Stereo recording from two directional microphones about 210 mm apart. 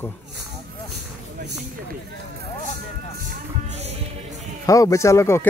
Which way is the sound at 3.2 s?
30° right (ahead or behind).